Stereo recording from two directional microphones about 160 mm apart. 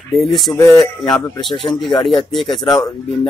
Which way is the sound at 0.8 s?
20° left (ahead or behind).